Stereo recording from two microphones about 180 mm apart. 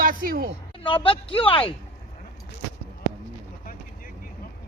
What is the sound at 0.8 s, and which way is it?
Speech, 30° left (ahead or behind).